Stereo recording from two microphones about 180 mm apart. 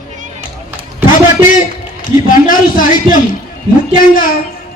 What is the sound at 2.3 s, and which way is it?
A man's voice, 50° left (ahead or behind).